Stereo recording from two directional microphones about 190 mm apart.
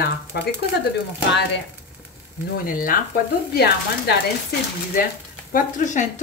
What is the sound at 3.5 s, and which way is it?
Speech, 55° left (ahead or behind).